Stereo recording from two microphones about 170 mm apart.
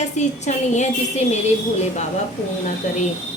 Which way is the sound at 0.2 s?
45° left (ahead or behind).